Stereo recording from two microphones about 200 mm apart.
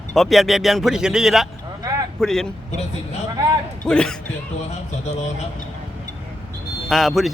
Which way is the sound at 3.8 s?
5° left (ahead or behind).